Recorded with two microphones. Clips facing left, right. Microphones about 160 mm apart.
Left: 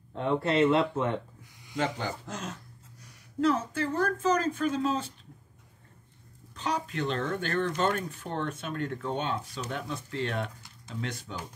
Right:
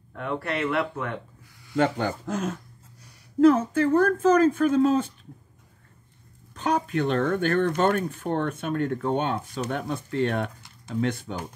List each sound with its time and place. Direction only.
0.1 s speech: 25° left (ahead or behind)
1.8 s speech: 55° right (ahead or behind)
6.5 s speech: 55° right (ahead or behind)